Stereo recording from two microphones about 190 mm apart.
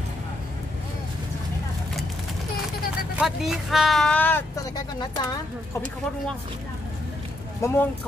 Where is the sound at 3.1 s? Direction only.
Centre (ahead or behind).